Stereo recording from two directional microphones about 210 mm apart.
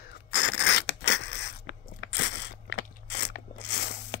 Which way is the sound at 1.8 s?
55° left (ahead or behind).